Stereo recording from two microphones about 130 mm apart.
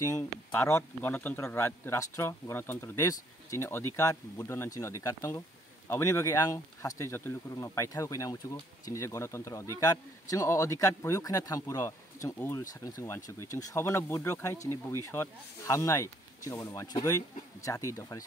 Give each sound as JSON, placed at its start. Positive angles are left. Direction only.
{"t": 0.5, "sound": "speech", "side_deg": 20}